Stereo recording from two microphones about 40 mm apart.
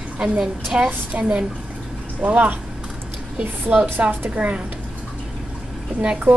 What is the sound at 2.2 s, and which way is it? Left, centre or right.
A woman's voice, right.